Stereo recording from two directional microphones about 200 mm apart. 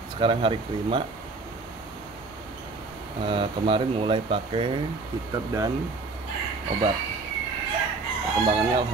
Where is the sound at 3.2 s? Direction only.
25° right (ahead or behind).